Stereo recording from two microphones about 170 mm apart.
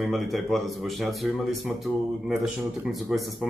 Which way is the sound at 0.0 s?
Centre (ahead or behind).